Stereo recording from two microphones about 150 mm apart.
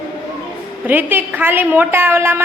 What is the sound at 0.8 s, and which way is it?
A woman's voice, 10° right (ahead or behind).